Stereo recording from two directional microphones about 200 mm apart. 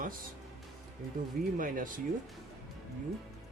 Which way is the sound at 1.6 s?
45° right (ahead or behind).